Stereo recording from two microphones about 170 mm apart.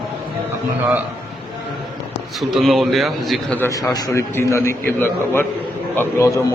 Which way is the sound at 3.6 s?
20° left (ahead or behind).